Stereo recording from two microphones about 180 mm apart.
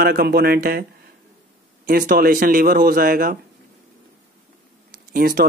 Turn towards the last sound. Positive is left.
turn(degrees=-55)  # may be behind; listen again after turning